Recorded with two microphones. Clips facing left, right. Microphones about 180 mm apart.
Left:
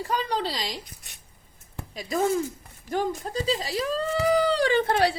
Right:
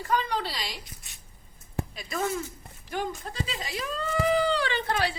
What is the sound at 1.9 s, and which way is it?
A woman's voice, 40° left (ahead or behind).